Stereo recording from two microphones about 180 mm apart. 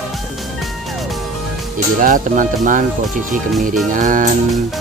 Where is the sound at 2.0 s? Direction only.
45° right (ahead or behind).